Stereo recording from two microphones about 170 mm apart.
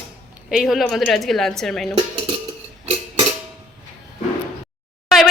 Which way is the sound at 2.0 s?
30° right (ahead or behind).